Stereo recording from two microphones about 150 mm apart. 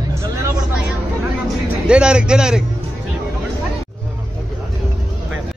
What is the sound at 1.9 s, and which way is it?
Speech, 5° right (ahead or behind).